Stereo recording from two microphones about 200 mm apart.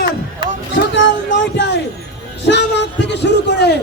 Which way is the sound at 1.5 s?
60° left (ahead or behind).